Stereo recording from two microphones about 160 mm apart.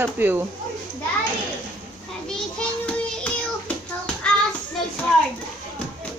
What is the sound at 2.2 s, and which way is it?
Child singing, 5° left (ahead or behind).